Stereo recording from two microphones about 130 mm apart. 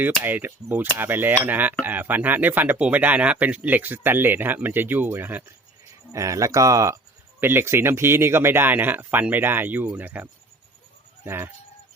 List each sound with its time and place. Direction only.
0.0 s speech: 15° right (ahead or behind)
11.2 s goat: 15° right (ahead or behind)